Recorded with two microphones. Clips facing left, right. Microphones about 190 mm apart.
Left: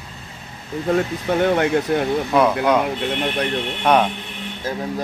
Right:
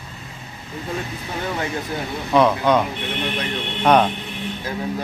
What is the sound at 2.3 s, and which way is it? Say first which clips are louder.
Speech: right 2 dB; 5° left (ahead or behind).